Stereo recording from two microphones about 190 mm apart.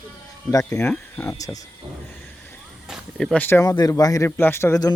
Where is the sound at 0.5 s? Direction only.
15° left (ahead or behind).